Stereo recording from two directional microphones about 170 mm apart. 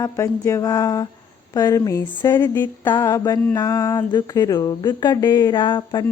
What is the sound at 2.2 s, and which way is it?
A woman's voice, 20° left (ahead or behind).